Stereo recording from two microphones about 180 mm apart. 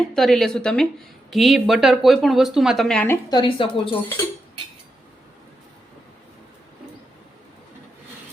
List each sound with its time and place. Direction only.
0.0 s speech: centre (ahead or behind)
3.2 s speech: 25° left (ahead or behind)